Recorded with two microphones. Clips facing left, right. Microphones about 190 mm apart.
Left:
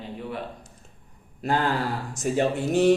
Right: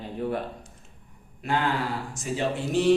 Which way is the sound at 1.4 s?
35° left (ahead or behind).